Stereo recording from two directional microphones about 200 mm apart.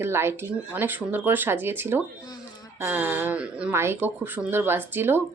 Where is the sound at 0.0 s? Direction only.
10° right (ahead or behind).